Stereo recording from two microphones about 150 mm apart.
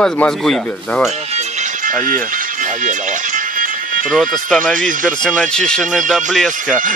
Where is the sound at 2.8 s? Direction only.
65° right (ahead or behind).